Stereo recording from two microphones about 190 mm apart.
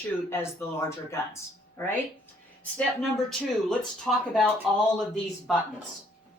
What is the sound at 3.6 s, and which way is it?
Speech, centre (ahead or behind).